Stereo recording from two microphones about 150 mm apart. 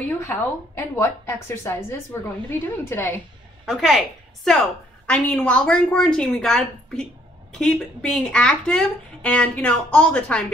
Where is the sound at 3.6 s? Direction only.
Centre (ahead or behind).